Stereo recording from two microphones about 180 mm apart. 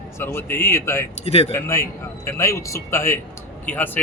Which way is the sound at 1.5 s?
15° left (ahead or behind).